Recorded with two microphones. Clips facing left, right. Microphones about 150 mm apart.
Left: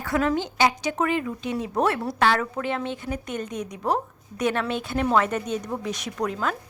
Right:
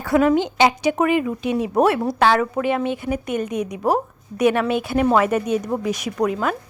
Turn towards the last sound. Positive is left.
turn(degrees=-10)  # may be behind; listen again after turning